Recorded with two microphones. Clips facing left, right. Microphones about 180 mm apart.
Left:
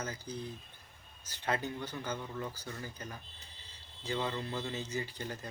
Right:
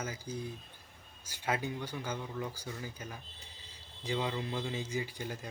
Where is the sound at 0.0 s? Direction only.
10° right (ahead or behind).